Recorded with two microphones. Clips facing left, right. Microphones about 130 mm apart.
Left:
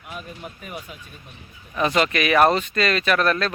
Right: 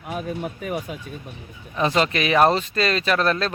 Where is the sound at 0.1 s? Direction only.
45° right (ahead or behind).